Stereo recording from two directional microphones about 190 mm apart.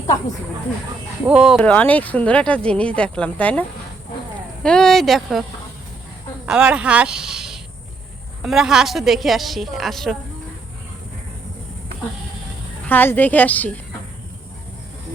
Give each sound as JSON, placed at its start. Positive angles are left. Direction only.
{"t": 1.3, "sound": "a woman's voice", "side_deg": -5}
{"t": 1.6, "sound": "speech", "side_deg": 10}
{"t": 4.6, "sound": "a woman's voice", "side_deg": 5}
{"t": 12.9, "sound": "speech", "side_deg": 10}